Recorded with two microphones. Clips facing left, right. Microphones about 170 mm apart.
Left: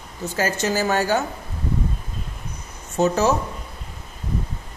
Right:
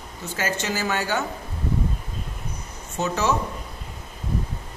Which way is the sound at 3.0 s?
40° left (ahead or behind).